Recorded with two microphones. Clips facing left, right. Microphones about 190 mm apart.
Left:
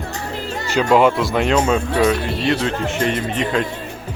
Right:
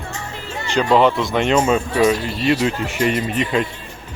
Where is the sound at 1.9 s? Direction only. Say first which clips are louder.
Even; 60° left (ahead or behind).